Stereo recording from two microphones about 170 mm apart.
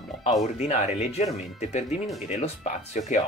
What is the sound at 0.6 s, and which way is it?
Speech, 40° left (ahead or behind).